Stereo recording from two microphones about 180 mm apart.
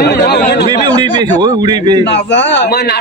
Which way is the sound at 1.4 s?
25° right (ahead or behind).